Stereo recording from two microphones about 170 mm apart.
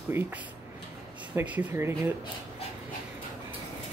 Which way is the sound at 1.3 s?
10° right (ahead or behind).